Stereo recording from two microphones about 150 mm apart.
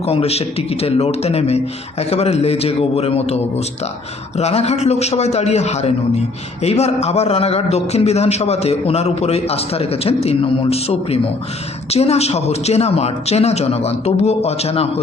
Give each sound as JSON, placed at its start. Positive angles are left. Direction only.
{"t": 0.0, "sound": "a man's voice", "side_deg": 40}